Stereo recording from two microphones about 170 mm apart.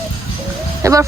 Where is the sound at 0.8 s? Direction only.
20° right (ahead or behind).